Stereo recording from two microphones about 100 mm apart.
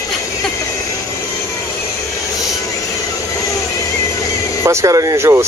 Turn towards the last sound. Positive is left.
turn(degrees=-30)  # may be behind; listen again after turning